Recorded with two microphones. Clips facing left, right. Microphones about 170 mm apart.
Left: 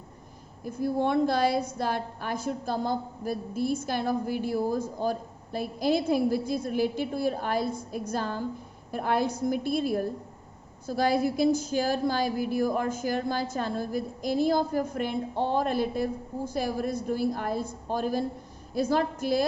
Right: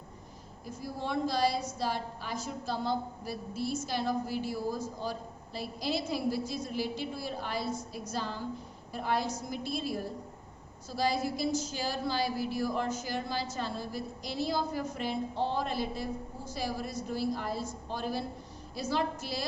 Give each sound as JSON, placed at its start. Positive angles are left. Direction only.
{"t": 0.6, "sound": "a woman's voice", "side_deg": 55}